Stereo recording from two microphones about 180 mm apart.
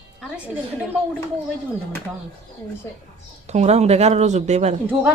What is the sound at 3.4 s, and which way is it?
Speech, 40° right (ahead or behind).